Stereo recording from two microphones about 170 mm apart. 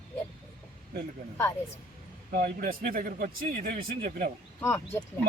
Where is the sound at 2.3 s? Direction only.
65° right (ahead or behind).